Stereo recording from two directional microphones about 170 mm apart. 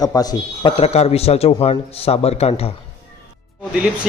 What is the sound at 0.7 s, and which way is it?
A man's voice, 35° left (ahead or behind).